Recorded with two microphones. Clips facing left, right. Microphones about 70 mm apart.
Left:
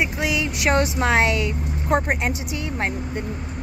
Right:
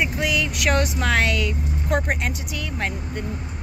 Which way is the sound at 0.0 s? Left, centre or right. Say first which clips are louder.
Even; centre.